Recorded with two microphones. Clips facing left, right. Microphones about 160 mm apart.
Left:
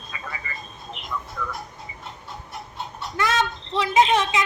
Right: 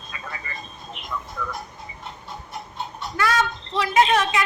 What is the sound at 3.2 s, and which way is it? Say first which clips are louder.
Speech: right 1 dB; 25° left (ahead or behind).